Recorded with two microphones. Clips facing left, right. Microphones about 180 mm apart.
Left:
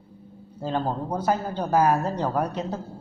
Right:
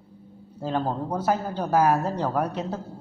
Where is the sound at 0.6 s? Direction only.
5° right (ahead or behind).